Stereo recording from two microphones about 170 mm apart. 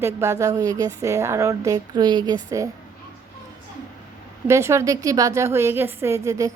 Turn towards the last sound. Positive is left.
turn(degrees=-20)  # may be behind; listen again after turning